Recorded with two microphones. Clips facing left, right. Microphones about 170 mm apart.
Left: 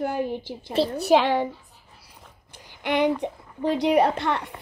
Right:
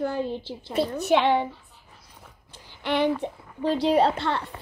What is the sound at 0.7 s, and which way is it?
Speech, 35° left (ahead or behind).